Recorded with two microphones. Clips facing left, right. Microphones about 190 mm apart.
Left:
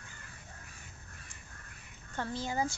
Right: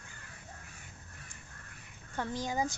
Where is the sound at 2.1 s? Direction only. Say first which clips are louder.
Right 1 dB; 15° right (ahead or behind).